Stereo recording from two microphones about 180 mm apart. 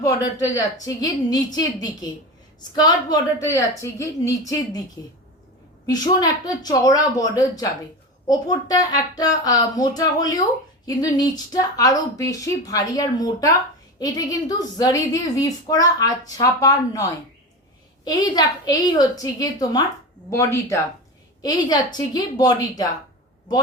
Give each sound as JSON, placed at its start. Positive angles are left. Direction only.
{"t": 0.0, "sound": "a woman's voice", "side_deg": 20}
{"t": 5.8, "sound": "a woman's voice", "side_deg": 20}